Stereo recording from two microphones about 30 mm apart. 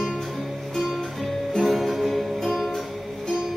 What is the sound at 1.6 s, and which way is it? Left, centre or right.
Music, centre.